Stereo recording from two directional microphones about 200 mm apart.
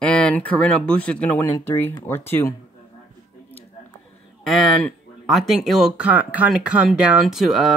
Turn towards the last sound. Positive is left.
turn(degrees=0)  # may be behind; listen again after turning